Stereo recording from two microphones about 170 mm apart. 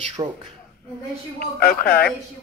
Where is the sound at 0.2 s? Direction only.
30° right (ahead or behind).